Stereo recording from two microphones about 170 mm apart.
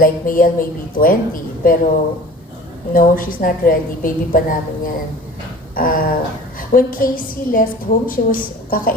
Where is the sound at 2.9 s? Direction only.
55° left (ahead or behind).